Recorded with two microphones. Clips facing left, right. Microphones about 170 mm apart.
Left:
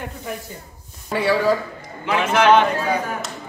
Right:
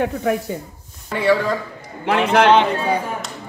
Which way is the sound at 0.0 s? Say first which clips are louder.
Right 11 dB; 90° right.